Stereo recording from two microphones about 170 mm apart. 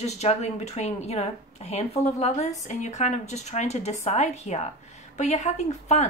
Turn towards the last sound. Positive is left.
turn(degrees=40)  # may be behind; listen again after turning